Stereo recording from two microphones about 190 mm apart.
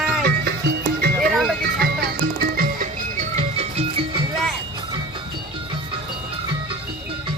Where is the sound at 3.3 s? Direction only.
30° right (ahead or behind).